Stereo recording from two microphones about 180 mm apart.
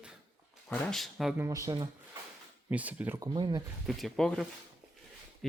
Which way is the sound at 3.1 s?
25° right (ahead or behind).